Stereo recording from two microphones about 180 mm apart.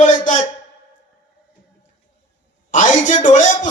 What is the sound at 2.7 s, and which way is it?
A man's voice, 45° left (ahead or behind).